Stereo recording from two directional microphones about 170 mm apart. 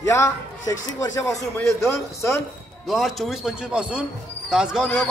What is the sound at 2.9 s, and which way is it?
Speech, centre (ahead or behind).